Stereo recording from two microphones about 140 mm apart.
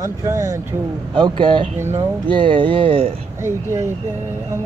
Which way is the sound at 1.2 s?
35° right (ahead or behind).